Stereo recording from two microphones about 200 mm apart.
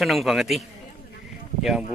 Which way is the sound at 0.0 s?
Centre (ahead or behind).